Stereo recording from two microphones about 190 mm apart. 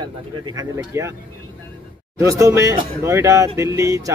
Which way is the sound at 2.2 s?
15° right (ahead or behind).